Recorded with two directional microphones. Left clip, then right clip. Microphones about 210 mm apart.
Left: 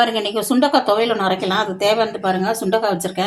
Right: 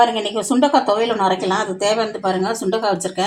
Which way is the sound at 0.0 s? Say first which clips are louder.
Right 1 dB; 25° left (ahead or behind).